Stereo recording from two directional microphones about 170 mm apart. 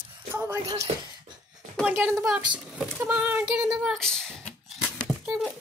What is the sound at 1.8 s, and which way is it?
Speech, 10° right (ahead or behind).